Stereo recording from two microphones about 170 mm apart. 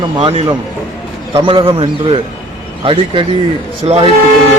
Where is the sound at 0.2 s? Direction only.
35° right (ahead or behind).